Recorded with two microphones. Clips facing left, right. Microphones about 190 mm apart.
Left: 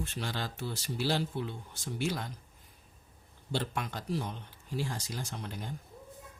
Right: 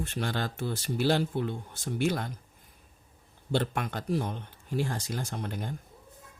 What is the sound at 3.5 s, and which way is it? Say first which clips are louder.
Speech: right 5 dB; 55° right (ahead or behind).